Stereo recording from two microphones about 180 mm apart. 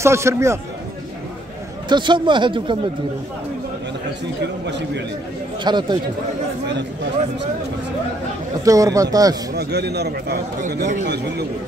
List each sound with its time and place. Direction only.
0.0 s a man's voice: 15° right (ahead or behind)
1.9 s a man's voice: 25° right (ahead or behind)
4.6 s a man's voice: 75° right (ahead or behind)
5.6 s a man's voice: 25° right (ahead or behind)
8.6 s a man's voice: 20° right (ahead or behind)
9.6 s a man's voice: 65° right (ahead or behind)
10.6 s speech: 45° right (ahead or behind)